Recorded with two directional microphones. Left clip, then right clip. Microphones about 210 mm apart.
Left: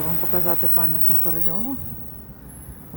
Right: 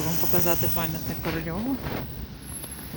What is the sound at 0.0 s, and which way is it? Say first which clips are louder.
Snake: right 1 dB; 60° left (ahead or behind).